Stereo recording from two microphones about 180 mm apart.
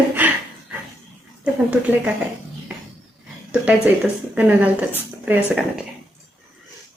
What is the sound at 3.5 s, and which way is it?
A woman's voice, 5° right (ahead or behind).